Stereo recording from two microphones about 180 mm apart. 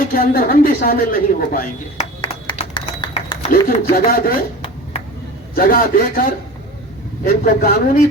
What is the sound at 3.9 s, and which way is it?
Speech, 55° left (ahead or behind).